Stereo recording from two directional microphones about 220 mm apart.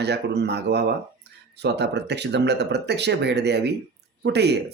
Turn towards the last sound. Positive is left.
turn(degrees=-50)  # may be behind; listen again after turning